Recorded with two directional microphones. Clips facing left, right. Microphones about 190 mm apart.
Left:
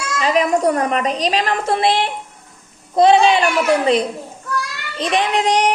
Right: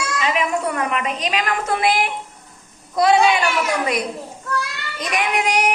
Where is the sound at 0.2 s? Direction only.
35° left (ahead or behind).